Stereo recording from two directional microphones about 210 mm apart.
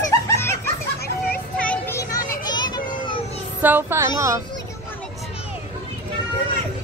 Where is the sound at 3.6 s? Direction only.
10° right (ahead or behind).